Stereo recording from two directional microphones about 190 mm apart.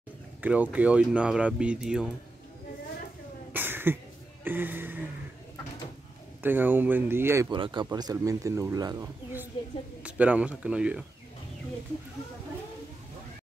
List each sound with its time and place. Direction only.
0.4 s speech: 10° right (ahead or behind)
3.5 s a sound: 10° right (ahead or behind)
4.5 s speech: 10° right (ahead or behind)
6.4 s speech: 10° right (ahead or behind)
7.5 s speech: 25° right (ahead or behind); by 11.1 s 5° right (ahead or behind)